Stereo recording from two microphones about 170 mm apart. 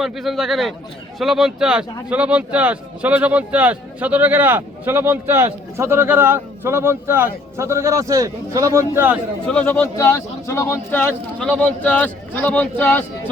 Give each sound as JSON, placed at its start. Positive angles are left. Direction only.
{"t": 0.0, "sound": "speech", "side_deg": 0}
{"t": 9.5, "sound": "speech", "side_deg": 5}